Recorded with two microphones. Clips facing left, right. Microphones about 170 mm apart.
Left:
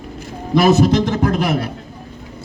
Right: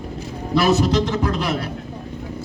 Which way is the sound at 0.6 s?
50° left (ahead or behind).